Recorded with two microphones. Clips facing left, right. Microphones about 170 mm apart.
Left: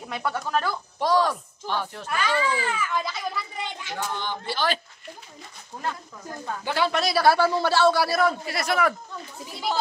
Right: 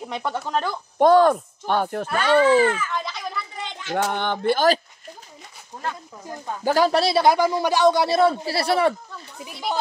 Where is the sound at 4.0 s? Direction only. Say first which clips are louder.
Right 8 dB; 65° right (ahead or behind); by 4.8 s 45° right (ahead or behind).